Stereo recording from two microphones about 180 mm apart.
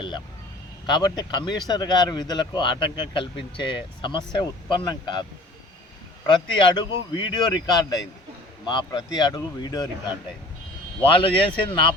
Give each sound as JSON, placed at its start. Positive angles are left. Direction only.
{"t": 0.9, "sound": "speech", "side_deg": 25}
{"t": 6.3, "sound": "speech", "side_deg": 25}
{"t": 11.0, "sound": "speech", "side_deg": 30}